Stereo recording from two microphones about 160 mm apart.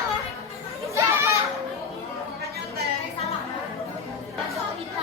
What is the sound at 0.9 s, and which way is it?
Children playing, 20° right (ahead or behind).